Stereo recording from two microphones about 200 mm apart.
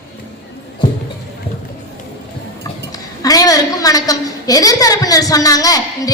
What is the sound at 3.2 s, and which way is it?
A woman's voice, 20° left (ahead or behind).